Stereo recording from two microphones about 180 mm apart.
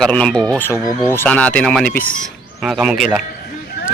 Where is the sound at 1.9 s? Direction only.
50° left (ahead or behind).